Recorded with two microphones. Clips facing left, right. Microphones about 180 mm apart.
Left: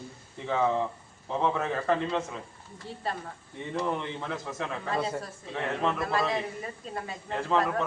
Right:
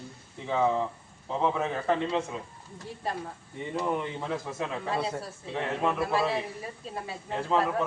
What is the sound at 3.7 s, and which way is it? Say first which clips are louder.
A man's voice: right 1 dB; 5° right (ahead or behind).